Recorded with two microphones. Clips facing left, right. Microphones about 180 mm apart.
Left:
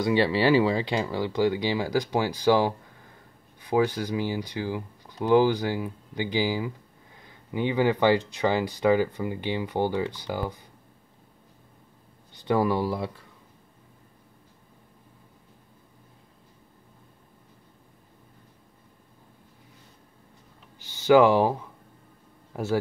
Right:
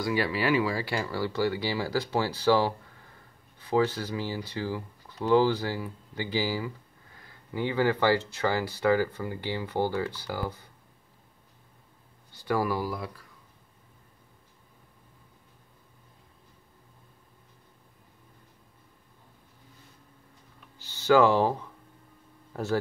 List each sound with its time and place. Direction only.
0.0 s speech: 25° left (ahead or behind)
12.3 s speech: 20° left (ahead or behind)
20.9 s speech: 15° left (ahead or behind)